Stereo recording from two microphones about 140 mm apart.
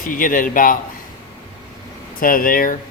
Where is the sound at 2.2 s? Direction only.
85° left.